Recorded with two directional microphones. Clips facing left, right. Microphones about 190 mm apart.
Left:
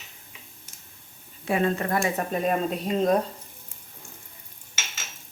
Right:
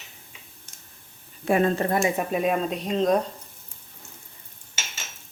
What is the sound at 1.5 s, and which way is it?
Speech, 45° right (ahead or behind).